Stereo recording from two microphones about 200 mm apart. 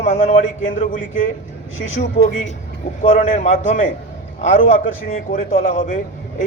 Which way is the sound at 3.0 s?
40° left (ahead or behind).